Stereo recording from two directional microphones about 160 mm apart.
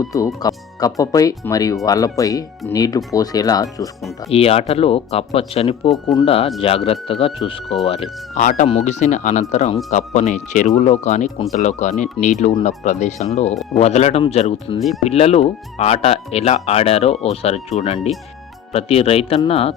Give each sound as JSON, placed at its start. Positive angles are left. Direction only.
{"t": 0.4, "sound": "speech", "side_deg": 20}
{"t": 4.3, "sound": "speech", "side_deg": 40}
{"t": 8.4, "sound": "speech", "side_deg": 50}